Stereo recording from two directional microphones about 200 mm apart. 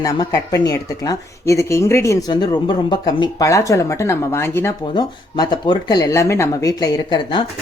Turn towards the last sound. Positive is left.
turn(degrees=20)  # may be behind; listen again after turning